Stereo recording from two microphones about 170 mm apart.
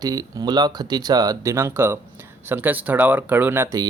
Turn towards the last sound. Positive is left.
turn(degrees=-15)  # may be behind; listen again after turning